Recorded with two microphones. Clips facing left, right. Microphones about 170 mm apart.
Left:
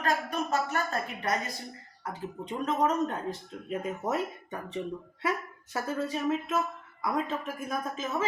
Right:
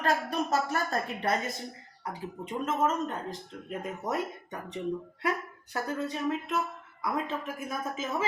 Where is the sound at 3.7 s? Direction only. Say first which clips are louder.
Left 2 dB; 5° left (ahead or behind).